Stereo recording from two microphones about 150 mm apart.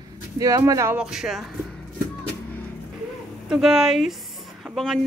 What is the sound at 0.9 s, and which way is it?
Speech, 5° right (ahead or behind).